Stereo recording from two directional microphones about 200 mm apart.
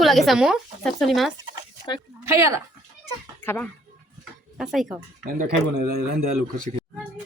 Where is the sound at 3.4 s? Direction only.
10° left (ahead or behind).